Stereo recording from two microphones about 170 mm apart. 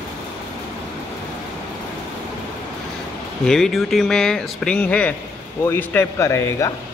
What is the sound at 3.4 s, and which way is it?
A man's voice, centre (ahead or behind).